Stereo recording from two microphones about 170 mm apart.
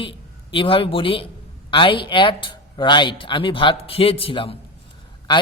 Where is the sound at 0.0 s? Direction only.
30° left (ahead or behind).